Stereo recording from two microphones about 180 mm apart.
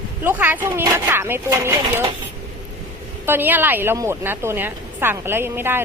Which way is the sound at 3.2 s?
10° right (ahead or behind).